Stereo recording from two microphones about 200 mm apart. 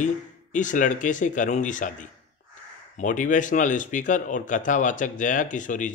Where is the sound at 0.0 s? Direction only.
40° left (ahead or behind).